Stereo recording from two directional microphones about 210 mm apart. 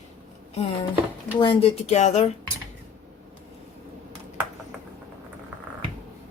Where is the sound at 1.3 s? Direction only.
25° left (ahead or behind).